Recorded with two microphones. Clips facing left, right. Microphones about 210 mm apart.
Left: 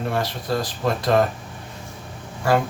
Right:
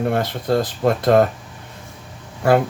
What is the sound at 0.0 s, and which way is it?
Speech, 50° right (ahead or behind).